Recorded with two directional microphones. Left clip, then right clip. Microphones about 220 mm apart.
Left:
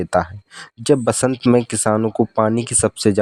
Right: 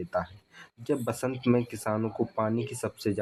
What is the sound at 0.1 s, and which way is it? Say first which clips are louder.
Speech: left 13 dB; 50° left (ahead or behind).